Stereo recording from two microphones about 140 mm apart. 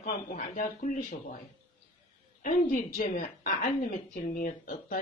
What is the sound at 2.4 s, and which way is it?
A woman's voice, 80° left.